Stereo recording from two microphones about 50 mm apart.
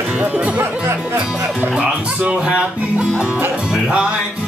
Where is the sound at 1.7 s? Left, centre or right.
Right.